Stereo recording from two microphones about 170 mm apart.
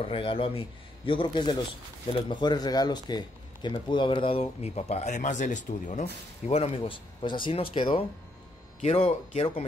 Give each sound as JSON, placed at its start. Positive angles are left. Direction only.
{"t": 0.0, "sound": "a man's voice", "side_deg": 30}
{"t": 6.4, "sound": "a man's voice", "side_deg": 35}